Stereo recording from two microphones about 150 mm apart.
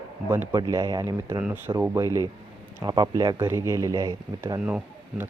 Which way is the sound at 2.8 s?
25° right (ahead or behind).